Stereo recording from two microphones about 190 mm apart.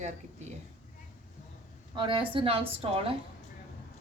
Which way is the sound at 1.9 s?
25° right (ahead or behind).